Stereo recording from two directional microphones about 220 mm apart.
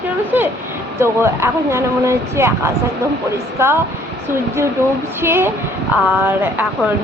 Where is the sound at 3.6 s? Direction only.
10° right (ahead or behind).